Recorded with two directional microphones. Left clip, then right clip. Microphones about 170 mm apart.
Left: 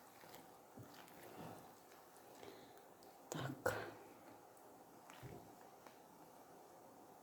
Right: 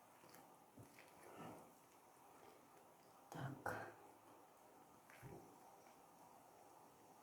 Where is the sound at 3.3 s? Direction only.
40° left (ahead or behind).